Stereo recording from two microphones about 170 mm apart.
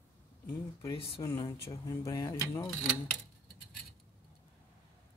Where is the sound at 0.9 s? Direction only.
20° left (ahead or behind).